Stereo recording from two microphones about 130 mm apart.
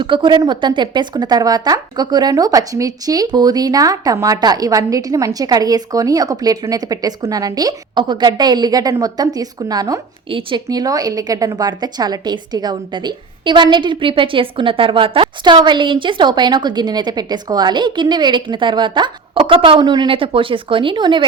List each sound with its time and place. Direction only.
0.0 s a woman's voice: 40° right (ahead or behind)
10.2 s speech: 45° right (ahead or behind)
10.7 s a woman's voice: 30° right (ahead or behind)